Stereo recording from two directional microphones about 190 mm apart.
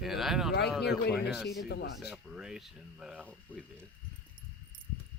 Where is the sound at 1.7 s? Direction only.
65° left (ahead or behind).